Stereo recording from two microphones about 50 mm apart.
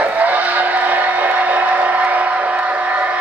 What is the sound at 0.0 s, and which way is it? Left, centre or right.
Vehicle, right.